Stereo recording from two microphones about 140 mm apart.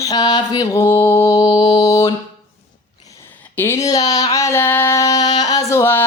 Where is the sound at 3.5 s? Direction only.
20° left (ahead or behind).